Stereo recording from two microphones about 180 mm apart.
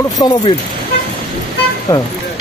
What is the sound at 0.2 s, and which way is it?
Speech, 25° left (ahead or behind).